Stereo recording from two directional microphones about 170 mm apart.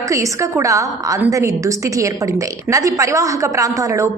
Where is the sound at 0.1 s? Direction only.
20° right (ahead or behind).